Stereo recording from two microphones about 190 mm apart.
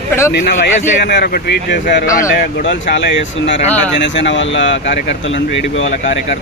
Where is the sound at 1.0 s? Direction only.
55° left (ahead or behind).